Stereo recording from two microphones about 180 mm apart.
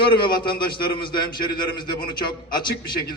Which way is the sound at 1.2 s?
55° left (ahead or behind).